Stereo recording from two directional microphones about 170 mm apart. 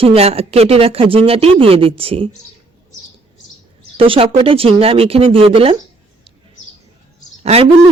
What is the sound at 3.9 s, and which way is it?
Speech, 30° right (ahead or behind).